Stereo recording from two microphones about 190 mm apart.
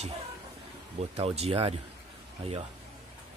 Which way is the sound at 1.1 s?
35° right (ahead or behind).